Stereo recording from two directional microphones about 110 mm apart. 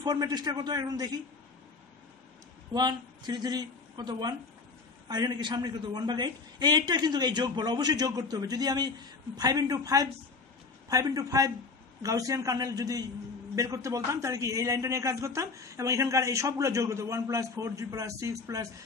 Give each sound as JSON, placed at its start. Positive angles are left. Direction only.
{"t": 0.0, "sound": "a man's voice", "side_deg": -40}
{"t": 2.7, "sound": "a man's voice", "side_deg": -40}